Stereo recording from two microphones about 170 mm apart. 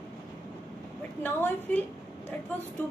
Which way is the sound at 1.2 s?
10° left (ahead or behind).